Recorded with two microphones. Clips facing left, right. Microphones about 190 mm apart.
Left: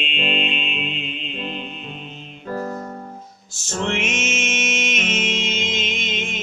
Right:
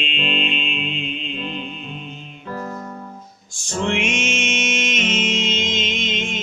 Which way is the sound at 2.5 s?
40° left (ahead or behind).